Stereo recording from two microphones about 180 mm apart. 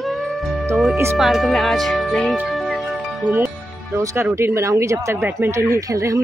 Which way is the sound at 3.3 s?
15° right (ahead or behind).